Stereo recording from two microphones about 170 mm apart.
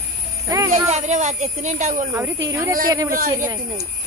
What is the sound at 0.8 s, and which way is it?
Speech, 45° right (ahead or behind).